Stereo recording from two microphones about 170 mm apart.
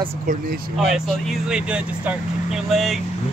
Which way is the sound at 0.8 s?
Centre (ahead or behind).